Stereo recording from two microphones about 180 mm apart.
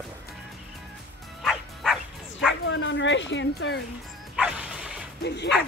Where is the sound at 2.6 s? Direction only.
90° left.